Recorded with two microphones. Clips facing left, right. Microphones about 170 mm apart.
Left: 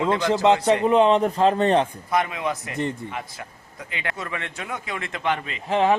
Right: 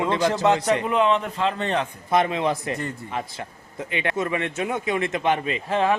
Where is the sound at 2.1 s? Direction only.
30° right (ahead or behind).